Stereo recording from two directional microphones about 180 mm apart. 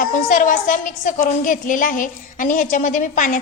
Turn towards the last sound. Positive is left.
turn(degrees=45)  # may be behind; listen again after turning